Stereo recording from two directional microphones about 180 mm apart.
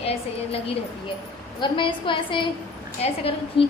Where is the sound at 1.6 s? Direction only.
25° left (ahead or behind).